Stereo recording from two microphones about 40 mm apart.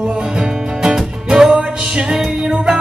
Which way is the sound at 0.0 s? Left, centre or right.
Centre.